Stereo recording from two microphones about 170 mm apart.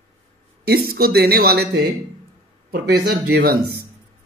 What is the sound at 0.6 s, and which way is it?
Speech, 65° right (ahead or behind).